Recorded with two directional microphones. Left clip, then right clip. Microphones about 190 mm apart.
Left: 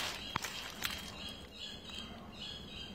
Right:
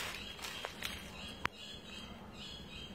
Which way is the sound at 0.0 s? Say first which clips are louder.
Left 4 dB; 50° left (ahead or behind).